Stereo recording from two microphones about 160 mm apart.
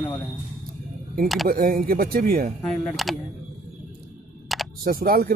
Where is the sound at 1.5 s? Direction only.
65° right (ahead or behind).